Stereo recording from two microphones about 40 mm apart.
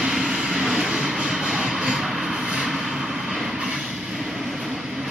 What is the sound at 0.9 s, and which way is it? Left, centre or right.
Train, centre.